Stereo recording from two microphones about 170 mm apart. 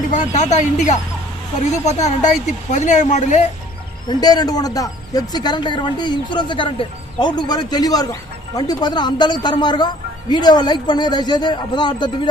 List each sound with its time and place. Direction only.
0.1 s speech: 45° left (ahead or behind)
4.1 s speech: 25° left (ahead or behind)